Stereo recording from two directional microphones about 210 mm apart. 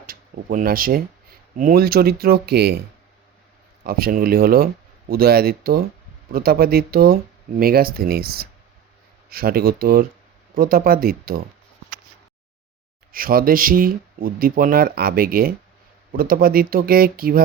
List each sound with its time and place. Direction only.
0.0 s speech: 45° right (ahead or behind)
3.8 s speech: 45° right (ahead or behind)
13.1 s speech: 45° right (ahead or behind)